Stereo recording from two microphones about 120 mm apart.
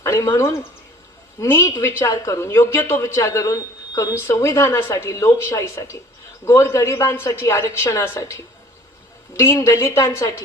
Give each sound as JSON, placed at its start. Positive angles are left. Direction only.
{"t": 0.0, "sound": "a woman's voice", "side_deg": 25}